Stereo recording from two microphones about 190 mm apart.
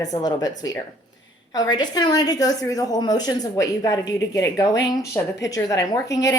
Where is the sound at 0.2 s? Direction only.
20° left (ahead or behind).